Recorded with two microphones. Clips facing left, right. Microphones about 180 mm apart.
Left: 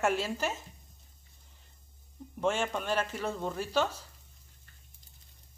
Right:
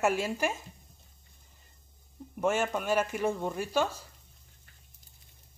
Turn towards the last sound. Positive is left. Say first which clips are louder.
# right 1 dB
turn(degrees=-10)  # may be behind; listen again after turning